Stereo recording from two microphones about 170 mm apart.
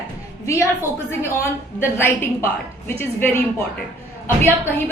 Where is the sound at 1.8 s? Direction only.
15° left (ahead or behind).